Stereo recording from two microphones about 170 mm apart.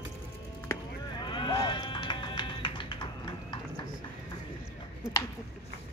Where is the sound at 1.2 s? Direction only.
25° left (ahead or behind).